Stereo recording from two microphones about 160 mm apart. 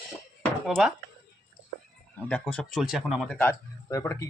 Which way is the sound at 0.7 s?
5° right (ahead or behind).